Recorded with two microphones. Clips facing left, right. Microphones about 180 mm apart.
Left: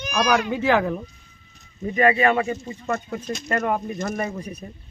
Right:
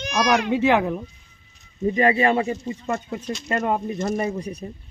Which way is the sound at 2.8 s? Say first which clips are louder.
Left 1 dB; 15° right (ahead or behind).